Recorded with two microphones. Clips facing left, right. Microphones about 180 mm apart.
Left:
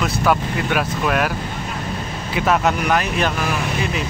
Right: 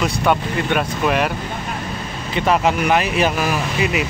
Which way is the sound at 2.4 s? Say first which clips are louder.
Right 1 dB; centre (ahead or behind).